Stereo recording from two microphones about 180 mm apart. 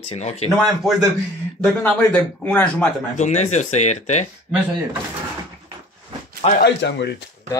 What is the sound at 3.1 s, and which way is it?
Speech, 40° left (ahead or behind).